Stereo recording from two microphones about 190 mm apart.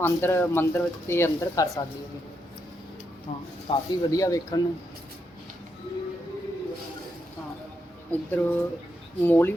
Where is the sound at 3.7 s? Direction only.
20° left (ahead or behind).